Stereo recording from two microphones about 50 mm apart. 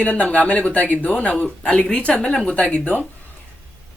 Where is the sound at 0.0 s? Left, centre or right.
Left.